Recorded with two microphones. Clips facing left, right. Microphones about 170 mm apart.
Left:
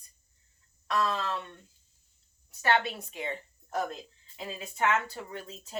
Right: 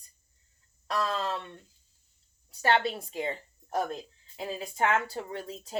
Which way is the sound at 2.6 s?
30° right (ahead or behind).